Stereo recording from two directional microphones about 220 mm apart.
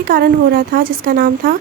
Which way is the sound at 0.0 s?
45° right (ahead or behind).